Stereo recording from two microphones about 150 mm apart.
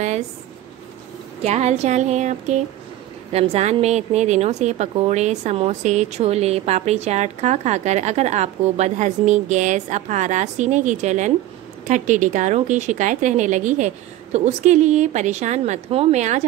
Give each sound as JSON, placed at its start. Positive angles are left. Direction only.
{"t": 1.4, "sound": "a woman's voice", "side_deg": -45}